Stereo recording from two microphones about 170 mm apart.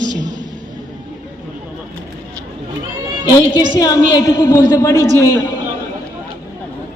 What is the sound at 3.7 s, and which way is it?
A woman's voice, 20° left (ahead or behind).